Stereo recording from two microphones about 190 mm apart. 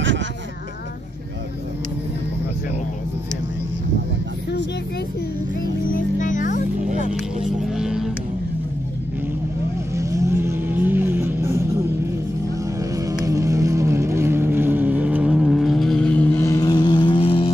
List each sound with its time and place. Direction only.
6.1 s music: 40° left (ahead or behind)
7.7 s mains hum: 5° right (ahead or behind)
9.9 s vehicle: 15° right (ahead or behind)
12.9 s vehicle: 15° right (ahead or behind); by 17.5 s 30° left (ahead or behind)